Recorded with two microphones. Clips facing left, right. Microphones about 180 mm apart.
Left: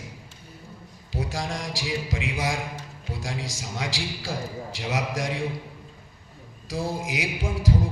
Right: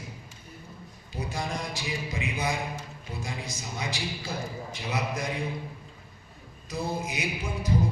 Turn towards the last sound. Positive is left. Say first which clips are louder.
# left 4 dB
turn(degrees=90)